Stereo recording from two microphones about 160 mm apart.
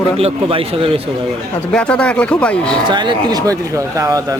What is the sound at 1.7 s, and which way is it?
Speech, 5° left (ahead or behind).